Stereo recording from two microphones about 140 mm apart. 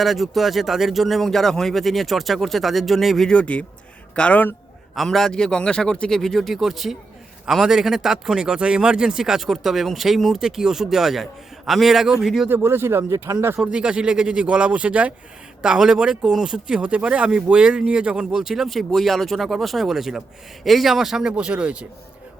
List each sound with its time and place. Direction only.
0.0 s a man's voice: centre (ahead or behind)
12.5 s speech: 15° right (ahead or behind)
13.6 s a man's voice: 5° right (ahead or behind)